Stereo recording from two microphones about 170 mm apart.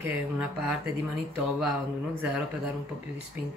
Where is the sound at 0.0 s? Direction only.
5° right (ahead or behind).